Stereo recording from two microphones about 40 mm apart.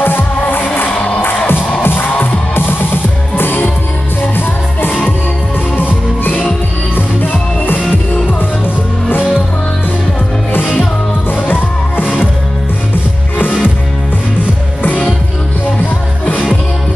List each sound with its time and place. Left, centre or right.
0.0 s music: left
7.0 s music: left
11.4 s music: left
14.9 s music: left